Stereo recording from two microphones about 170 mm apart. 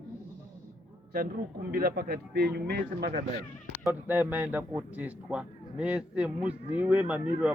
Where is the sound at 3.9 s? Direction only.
10° right (ahead or behind).